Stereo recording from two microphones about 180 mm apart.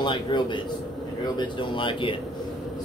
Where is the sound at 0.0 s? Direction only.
25° left (ahead or behind).